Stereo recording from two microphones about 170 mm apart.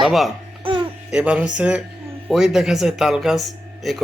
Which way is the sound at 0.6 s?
30° right (ahead or behind).